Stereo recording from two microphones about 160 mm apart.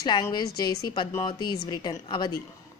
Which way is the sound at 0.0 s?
25° left (ahead or behind).